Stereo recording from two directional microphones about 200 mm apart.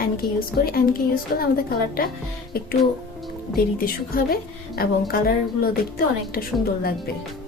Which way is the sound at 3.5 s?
45° left (ahead or behind).